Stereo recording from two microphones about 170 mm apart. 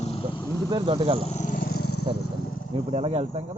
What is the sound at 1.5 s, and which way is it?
Vehicle, 70° left (ahead or behind).